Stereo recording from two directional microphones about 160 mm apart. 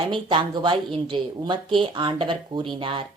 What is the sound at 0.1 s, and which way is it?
A woman's voice, 30° right (ahead or behind).